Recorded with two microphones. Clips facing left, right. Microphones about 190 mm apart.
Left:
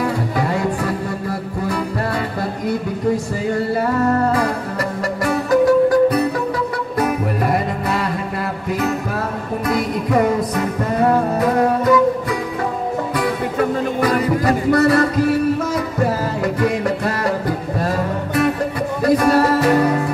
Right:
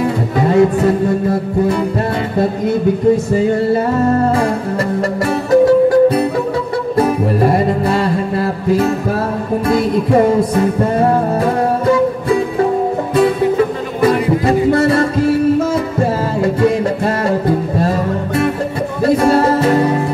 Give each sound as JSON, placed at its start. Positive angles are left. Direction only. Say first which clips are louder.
{"t": 0.0, "sound": "music", "louder": "right 4 dB", "side_deg": -25}
{"t": 3.3, "sound": "music", "louder": "right 6 dB", "side_deg": -25}
{"t": 14.4, "sound": "music", "louder": "right 2 dB", "side_deg": -25}